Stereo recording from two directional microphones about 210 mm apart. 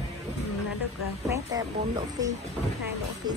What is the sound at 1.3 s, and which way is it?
A woman's voice, 20° right (ahead or behind).